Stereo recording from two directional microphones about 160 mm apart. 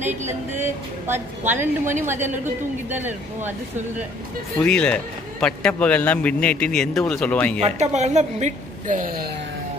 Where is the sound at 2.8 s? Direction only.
10° right (ahead or behind).